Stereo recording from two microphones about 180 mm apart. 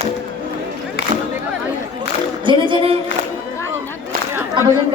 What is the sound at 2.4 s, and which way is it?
Music, 30° right (ahead or behind).